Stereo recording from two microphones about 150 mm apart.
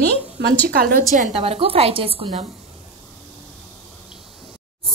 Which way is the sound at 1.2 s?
40° right (ahead or behind).